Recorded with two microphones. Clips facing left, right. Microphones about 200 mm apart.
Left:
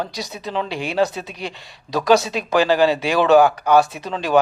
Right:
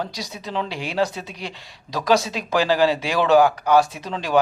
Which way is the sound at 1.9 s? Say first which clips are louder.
Left 3 dB; 65° left (ahead or behind).